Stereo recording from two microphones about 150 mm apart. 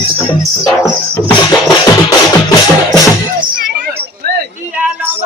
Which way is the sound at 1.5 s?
25° left (ahead or behind).